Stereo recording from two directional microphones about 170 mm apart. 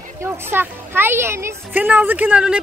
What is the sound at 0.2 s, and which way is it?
A woman's voice, 15° right (ahead or behind).